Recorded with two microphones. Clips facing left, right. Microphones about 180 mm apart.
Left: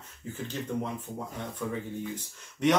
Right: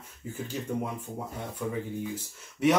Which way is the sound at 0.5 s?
10° right (ahead or behind).